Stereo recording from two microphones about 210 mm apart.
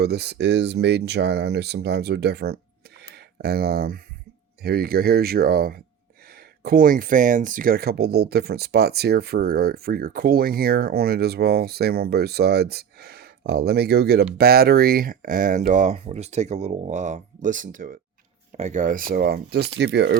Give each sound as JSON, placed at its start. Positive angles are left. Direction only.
{"t": 0.0, "sound": "speech", "side_deg": -50}